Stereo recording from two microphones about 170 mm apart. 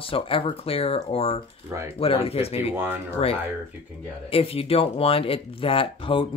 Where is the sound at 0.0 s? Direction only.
35° left (ahead or behind).